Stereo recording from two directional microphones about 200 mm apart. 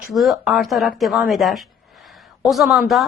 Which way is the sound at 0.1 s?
Centre (ahead or behind).